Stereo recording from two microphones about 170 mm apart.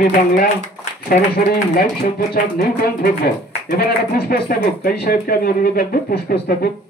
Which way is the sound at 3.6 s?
65° left (ahead or behind).